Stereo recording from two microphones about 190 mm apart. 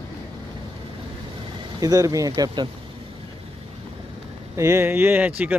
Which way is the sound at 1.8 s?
20° right (ahead or behind).